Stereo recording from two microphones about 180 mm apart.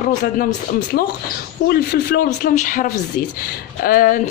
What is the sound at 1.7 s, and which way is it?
Speech, 55° left (ahead or behind).